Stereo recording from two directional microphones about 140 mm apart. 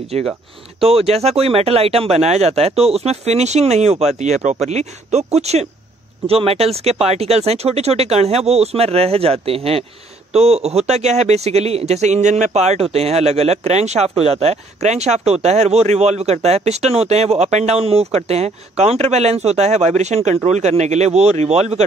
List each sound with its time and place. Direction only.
0.7 s speech: 45° right (ahead or behind)